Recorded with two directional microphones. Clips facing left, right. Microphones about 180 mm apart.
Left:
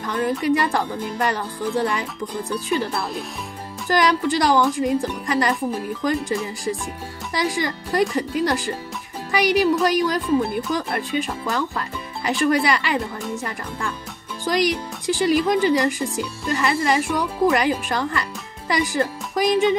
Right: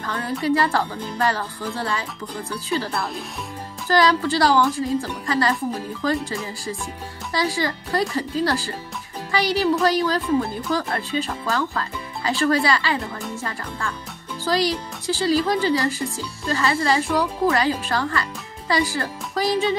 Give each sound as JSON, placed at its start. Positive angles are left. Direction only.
{"t": 0.0, "sound": "speech", "side_deg": 15}
{"t": 3.9, "sound": "speech", "side_deg": 15}